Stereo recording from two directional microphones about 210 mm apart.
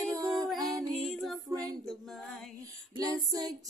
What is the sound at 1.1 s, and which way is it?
Music, centre (ahead or behind).